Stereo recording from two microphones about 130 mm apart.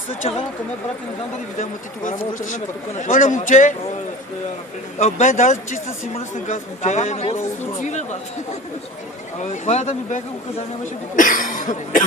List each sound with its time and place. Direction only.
2.0 s a man's voice: 80° left
4.9 s a man's voice: 60° left (ahead or behind)
6.1 s a man's voice: 65° left (ahead or behind)
9.4 s a man's voice: 60° left (ahead or behind)
11.2 s speech: 90° left